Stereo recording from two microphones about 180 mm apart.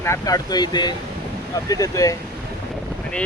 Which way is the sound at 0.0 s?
15° left (ahead or behind).